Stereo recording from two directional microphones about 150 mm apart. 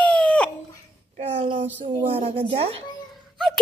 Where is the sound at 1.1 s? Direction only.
40° right (ahead or behind).